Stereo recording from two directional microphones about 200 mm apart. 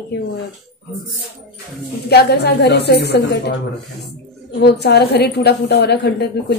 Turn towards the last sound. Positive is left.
turn(degrees=55)  # may be behind; listen again after turning